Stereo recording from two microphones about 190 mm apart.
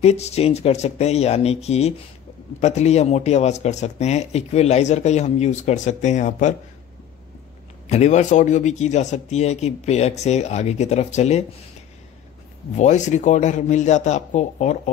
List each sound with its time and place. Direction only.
0.0 s speech: 35° left (ahead or behind)
7.9 s speech: 35° left (ahead or behind)
12.7 s speech: 40° left (ahead or behind)